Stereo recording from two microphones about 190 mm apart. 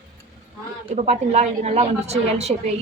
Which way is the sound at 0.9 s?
35° right (ahead or behind).